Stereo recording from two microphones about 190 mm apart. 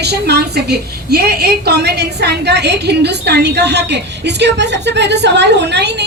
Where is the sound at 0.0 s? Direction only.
60° right (ahead or behind).